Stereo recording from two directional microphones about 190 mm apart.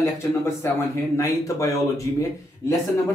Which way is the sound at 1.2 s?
15° left (ahead or behind).